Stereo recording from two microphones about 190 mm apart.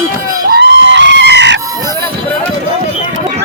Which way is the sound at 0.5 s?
70° right (ahead or behind).